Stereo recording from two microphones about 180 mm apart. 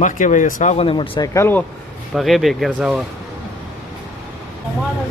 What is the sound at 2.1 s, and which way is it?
Speech, centre (ahead or behind).